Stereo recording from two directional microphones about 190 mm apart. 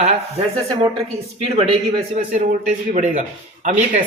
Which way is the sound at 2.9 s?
40° right (ahead or behind).